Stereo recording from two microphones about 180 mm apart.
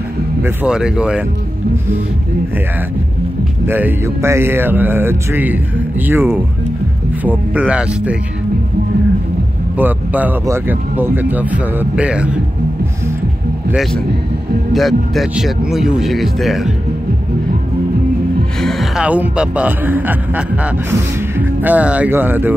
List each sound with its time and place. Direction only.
0.4 s speech: 5° right (ahead or behind)
3.6 s speech: 10° right (ahead or behind)
9.8 s speech: 10° right (ahead or behind)
14.7 s speech: centre (ahead or behind)
18.6 s speech: centre (ahead or behind)